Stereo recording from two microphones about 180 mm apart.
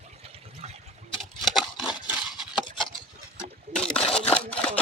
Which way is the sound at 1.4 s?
5° right (ahead or behind).